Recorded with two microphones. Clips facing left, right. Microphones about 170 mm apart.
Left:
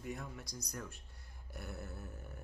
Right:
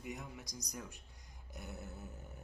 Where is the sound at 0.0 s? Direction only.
15° right (ahead or behind).